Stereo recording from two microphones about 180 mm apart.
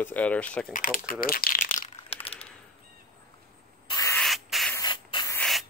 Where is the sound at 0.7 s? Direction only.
50° left (ahead or behind); by 2.5 s 35° left (ahead or behind).